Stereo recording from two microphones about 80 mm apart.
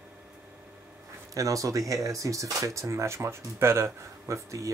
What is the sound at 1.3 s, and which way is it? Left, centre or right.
Speech, right.